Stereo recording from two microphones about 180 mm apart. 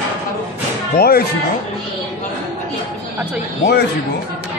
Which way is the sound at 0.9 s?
60° left (ahead or behind).